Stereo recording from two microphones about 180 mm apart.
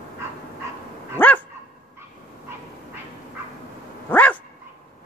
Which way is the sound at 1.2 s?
10° left (ahead or behind).